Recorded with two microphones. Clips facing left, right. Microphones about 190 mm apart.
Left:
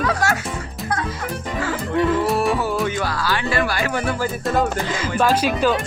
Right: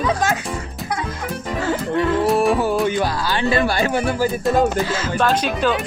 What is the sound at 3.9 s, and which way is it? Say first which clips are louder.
Speech: right 3 dB; 5° right (ahead or behind).